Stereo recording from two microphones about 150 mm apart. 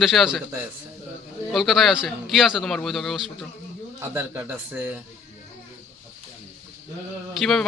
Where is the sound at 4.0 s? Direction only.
15° right (ahead or behind).